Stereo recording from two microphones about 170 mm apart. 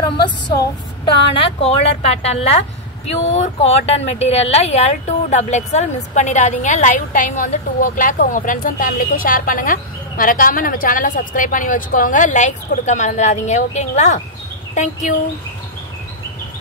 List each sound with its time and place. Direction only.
0.0 s a woman's voice: 25° left (ahead or behind)
1.6 s a woman's voice: 35° left (ahead or behind)